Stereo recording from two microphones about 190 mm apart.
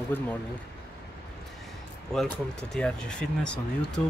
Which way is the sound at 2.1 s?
5° left (ahead or behind).